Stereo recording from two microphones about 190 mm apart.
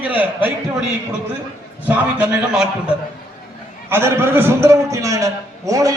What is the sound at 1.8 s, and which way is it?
A man's voice, 10° right (ahead or behind).